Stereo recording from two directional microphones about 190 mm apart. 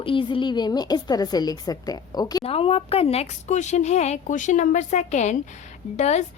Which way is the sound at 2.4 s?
30° left (ahead or behind).